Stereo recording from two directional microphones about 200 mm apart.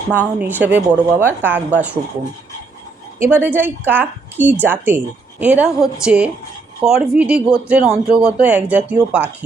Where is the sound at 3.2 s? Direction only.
10° right (ahead or behind).